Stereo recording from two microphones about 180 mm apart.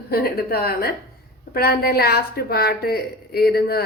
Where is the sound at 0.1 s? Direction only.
60° left (ahead or behind).